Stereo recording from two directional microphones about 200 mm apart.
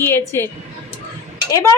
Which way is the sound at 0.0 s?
10° left (ahead or behind).